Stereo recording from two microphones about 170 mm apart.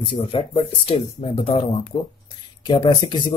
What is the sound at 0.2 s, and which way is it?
Speech, 35° left (ahead or behind).